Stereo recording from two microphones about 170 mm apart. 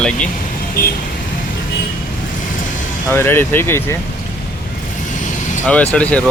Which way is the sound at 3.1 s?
15° left (ahead or behind).